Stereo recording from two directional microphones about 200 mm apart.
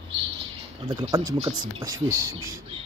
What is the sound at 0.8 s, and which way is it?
Speech, 20° right (ahead or behind).